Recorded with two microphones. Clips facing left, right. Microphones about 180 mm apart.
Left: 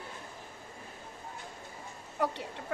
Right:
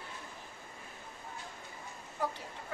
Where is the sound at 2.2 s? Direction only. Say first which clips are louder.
Left 4 dB; 65° left (ahead or behind).